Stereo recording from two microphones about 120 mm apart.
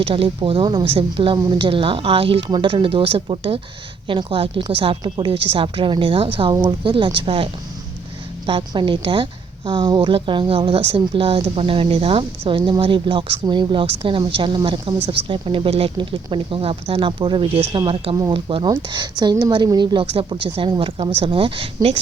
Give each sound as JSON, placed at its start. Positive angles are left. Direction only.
{"t": 0.0, "sound": "a woman's voice", "side_deg": -50}